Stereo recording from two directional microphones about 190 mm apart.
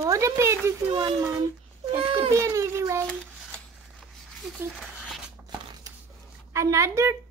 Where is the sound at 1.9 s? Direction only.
25° right (ahead or behind).